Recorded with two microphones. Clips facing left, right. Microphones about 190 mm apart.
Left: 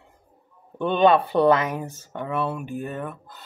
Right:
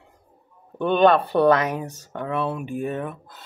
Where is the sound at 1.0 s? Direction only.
5° left (ahead or behind).